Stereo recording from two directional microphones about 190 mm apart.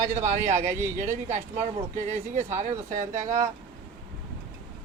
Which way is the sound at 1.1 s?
35° right (ahead or behind).